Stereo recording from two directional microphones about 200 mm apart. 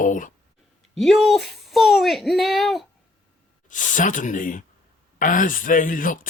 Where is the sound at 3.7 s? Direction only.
40° left (ahead or behind).